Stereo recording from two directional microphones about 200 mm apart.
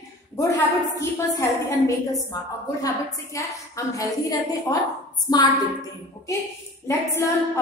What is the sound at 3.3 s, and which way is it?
A woman's voice, 15° left (ahead or behind).